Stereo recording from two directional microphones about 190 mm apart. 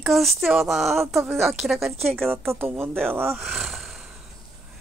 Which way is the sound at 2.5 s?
10° right (ahead or behind).